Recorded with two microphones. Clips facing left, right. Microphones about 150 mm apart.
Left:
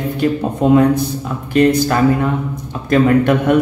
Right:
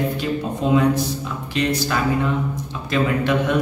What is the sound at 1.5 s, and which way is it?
Speech, 50° left (ahead or behind).